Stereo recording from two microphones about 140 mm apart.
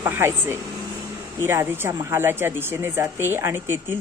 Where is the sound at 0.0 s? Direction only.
15° right (ahead or behind).